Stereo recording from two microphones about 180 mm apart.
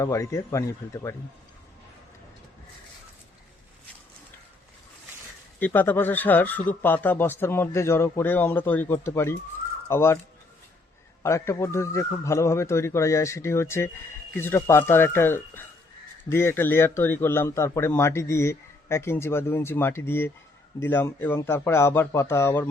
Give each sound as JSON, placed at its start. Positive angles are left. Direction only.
{"t": 0.0, "sound": "a man's voice", "side_deg": 15}
{"t": 5.5, "sound": "a man's voice", "side_deg": 10}
{"t": 11.2, "sound": "a man's voice", "side_deg": 15}